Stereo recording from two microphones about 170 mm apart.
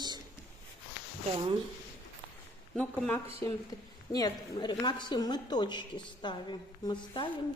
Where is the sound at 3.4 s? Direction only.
20° left (ahead or behind).